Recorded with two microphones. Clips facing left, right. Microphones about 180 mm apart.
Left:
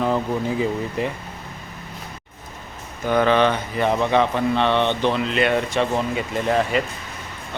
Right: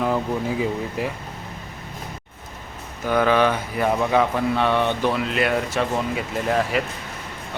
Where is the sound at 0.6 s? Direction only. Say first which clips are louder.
Left 1 dB; 5° right (ahead or behind).